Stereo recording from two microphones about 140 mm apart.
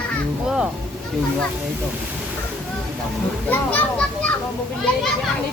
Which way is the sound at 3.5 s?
10° left (ahead or behind).